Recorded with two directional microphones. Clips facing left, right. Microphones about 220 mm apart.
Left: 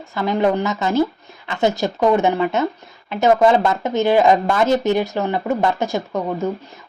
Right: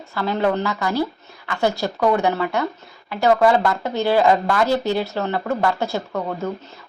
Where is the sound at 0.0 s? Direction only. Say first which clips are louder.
Left 3 dB; 15° left (ahead or behind).